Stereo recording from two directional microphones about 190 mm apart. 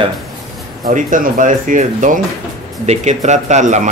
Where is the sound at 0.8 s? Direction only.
45° right (ahead or behind).